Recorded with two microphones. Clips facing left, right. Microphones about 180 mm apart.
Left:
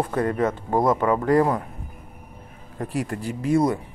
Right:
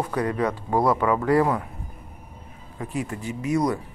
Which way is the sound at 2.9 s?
65° left (ahead or behind).